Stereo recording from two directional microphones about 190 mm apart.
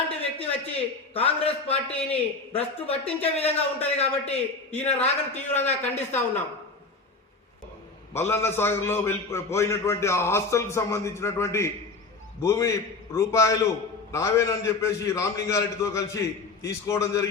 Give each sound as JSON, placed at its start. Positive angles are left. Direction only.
{"t": 0.1, "sound": "a sound", "side_deg": 30}
{"t": 1.1, "sound": "a man's voice", "side_deg": 30}
{"t": 8.1, "sound": "a man's voice", "side_deg": 15}